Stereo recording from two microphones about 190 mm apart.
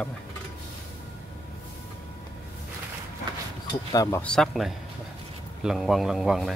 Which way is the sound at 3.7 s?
20° left (ahead or behind).